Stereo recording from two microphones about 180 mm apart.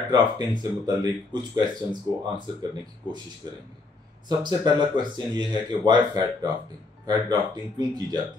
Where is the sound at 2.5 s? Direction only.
25° right (ahead or behind).